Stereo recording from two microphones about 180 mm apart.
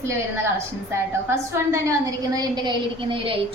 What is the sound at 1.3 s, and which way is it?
A woman's voice, 15° right (ahead or behind).